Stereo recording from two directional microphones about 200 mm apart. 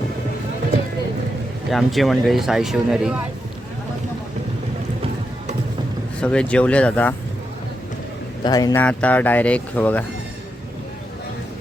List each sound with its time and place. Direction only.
1.7 s speech: centre (ahead or behind)
6.1 s speech: 5° left (ahead or behind)
8.4 s speech: 20° left (ahead or behind)
8.8 s speech: 5° left (ahead or behind)